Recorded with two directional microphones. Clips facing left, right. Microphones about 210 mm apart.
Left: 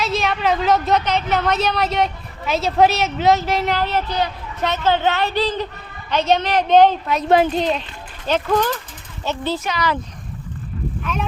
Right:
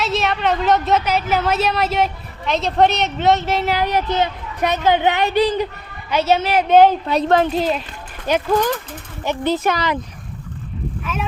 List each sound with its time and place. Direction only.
0.0 s a woman's voice: centre (ahead or behind)
3.8 s a child's voice: 15° right (ahead or behind)
7.3 s a woman's voice: 10° left (ahead or behind)
7.5 s a woman's voice: 5° right (ahead or behind)
11.0 s speech: 5° right (ahead or behind)